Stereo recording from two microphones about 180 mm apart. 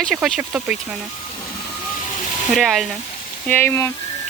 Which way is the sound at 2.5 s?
Centre (ahead or behind).